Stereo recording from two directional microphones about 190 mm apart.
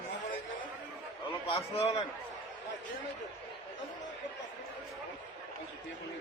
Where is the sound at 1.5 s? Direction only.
35° left (ahead or behind).